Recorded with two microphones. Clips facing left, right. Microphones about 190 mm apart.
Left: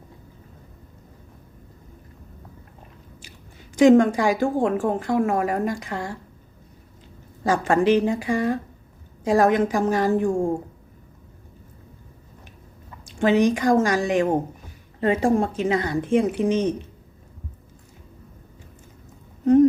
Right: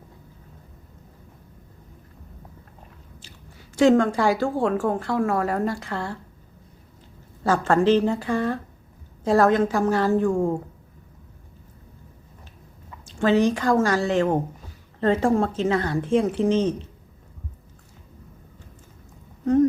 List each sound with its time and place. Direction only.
3.2 s speech: 15° left (ahead or behind)
7.4 s speech: 15° left (ahead or behind)
10.2 s a woman's voice: 30° left (ahead or behind)
13.1 s speech: 15° left (ahead or behind)